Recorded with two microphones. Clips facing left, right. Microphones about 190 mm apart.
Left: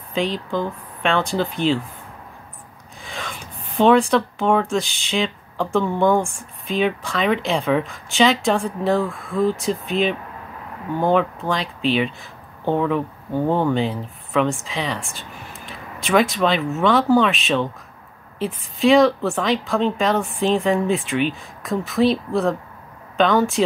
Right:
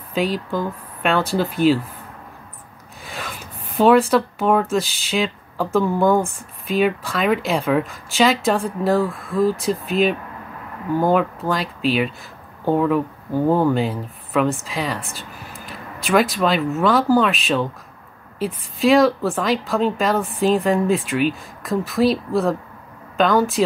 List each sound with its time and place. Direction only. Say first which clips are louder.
0.1 s a woman's voice: right 1 dB; 5° right (ahead or behind)
3.0 s a woman's voice: even; 5° right (ahead or behind)